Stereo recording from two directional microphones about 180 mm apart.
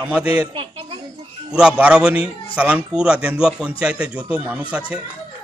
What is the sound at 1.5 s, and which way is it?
A man's voice, 5° right (ahead or behind).